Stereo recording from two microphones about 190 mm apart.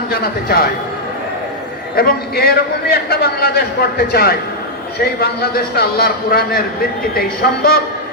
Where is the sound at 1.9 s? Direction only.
55° left (ahead or behind).